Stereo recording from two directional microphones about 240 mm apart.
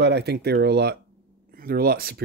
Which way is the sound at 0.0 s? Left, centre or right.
Right.